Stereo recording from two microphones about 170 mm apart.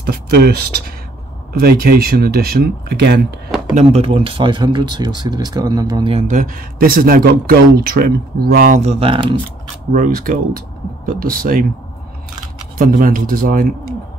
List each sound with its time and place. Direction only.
0.0 s speech: 65° right (ahead or behind)
3.7 s speech: 35° right (ahead or behind)
6.2 s speech: 50° right (ahead or behind)
8.7 s speech: 35° right (ahead or behind)
9.9 s speech: 55° right (ahead or behind)
12.7 s speech: 55° right (ahead or behind)